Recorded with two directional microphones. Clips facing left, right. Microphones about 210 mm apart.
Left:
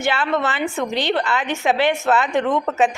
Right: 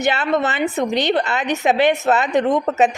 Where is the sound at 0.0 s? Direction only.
20° right (ahead or behind).